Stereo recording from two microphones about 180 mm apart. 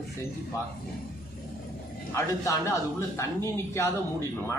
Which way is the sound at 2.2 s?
15° left (ahead or behind).